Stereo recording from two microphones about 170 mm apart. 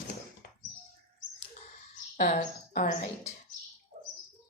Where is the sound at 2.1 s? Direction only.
50° left (ahead or behind).